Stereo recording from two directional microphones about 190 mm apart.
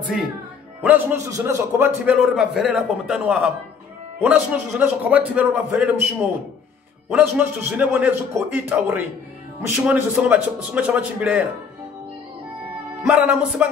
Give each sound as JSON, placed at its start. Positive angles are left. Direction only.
{"t": 0.8, "sound": "a man's voice", "side_deg": -10}
{"t": 7.1, "sound": "a man's voice", "side_deg": -10}
{"t": 13.0, "sound": "a man's voice", "side_deg": -5}